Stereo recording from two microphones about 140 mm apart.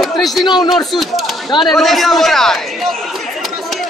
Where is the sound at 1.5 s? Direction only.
30° left (ahead or behind).